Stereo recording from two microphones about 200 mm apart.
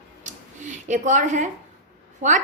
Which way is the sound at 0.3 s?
40° right (ahead or behind).